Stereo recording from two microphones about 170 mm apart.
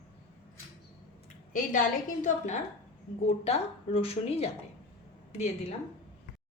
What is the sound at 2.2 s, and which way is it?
A woman's voice, 45° left (ahead or behind).